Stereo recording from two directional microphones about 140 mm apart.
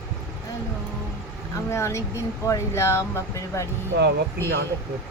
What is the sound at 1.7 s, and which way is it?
Speech, 20° left (ahead or behind).